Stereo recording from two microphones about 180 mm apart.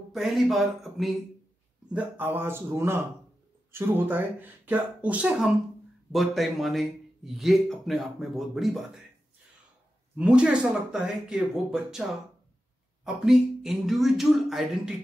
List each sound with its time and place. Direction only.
0.1 s speech: centre (ahead or behind)
10.1 s speech: 5° right (ahead or behind)